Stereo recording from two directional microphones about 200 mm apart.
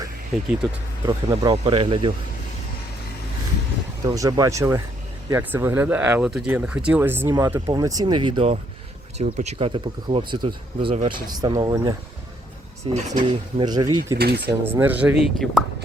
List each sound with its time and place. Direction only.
0.3 s speech: centre (ahead or behind)
1.0 s speech: 25° right (ahead or behind)
4.0 s speech: 20° right (ahead or behind)
12.9 s speech: 35° right (ahead or behind); by 14.2 s 20° right (ahead or behind)
14.2 s speech: 55° right (ahead or behind)
14.6 s speech: 10° right (ahead or behind)